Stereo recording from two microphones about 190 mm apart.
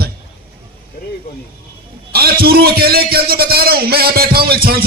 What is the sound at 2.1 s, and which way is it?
A man's voice, 55° right (ahead or behind).